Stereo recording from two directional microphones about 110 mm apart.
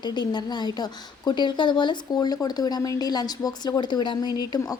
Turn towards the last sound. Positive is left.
turn(degrees=35)  # may be behind; listen again after turning